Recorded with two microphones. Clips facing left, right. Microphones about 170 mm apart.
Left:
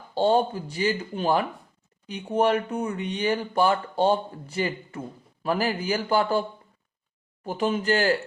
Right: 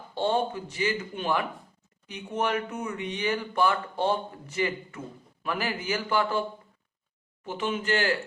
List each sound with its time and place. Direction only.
0.1 s speech: 35° left (ahead or behind)
7.4 s speech: 40° left (ahead or behind)